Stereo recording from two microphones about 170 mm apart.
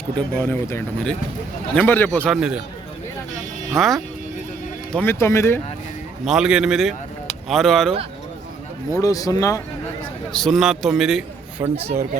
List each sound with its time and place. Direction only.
0.2 s speech: 15° left (ahead or behind)
3.7 s speech: centre (ahead or behind)
4.9 s speech: 10° left (ahead or behind)
6.2 s a man's voice: 5° right (ahead or behind)
8.9 s speech: 20° left (ahead or behind)
10.3 s a man's voice: centre (ahead or behind)
11.6 s speech: 20° right (ahead or behind)